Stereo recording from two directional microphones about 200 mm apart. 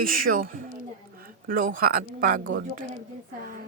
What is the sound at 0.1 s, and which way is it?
Speech, 45° right (ahead or behind).